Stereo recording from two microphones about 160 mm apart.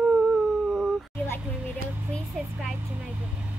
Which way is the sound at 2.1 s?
Centre (ahead or behind).